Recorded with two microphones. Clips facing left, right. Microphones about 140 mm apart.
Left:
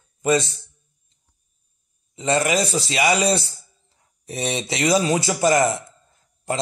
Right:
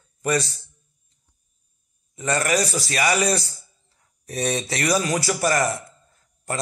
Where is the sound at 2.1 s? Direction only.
20° left (ahead or behind).